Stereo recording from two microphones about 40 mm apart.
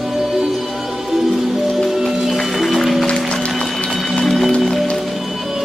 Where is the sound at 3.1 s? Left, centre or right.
Left.